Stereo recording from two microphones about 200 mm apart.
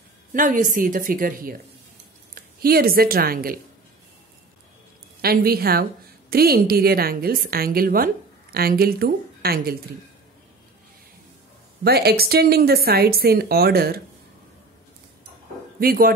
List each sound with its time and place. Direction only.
0.3 s a woman's voice: 40° right (ahead or behind)
5.2 s a woman's voice: 50° right (ahead or behind)
11.8 s a woman's voice: 55° right (ahead or behind)
15.8 s a woman's voice: 45° right (ahead or behind)